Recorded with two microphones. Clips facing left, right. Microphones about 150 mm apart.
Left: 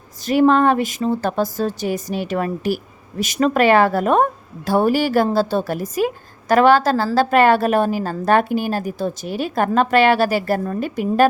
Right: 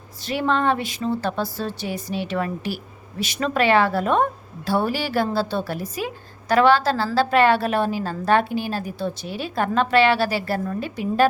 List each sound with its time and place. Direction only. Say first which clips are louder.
0.2 s a woman's voice: left 8 dB; 45° left (ahead or behind)